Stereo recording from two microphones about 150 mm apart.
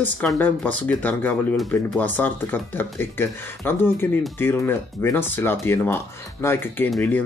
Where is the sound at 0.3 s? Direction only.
10° left (ahead or behind).